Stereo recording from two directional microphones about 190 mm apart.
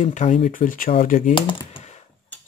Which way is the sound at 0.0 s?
40° left (ahead or behind).